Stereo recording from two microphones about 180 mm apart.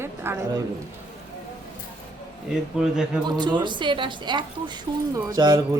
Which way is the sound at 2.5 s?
5° right (ahead or behind).